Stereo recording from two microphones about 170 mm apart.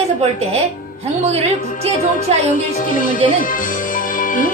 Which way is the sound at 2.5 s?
55° left (ahead or behind).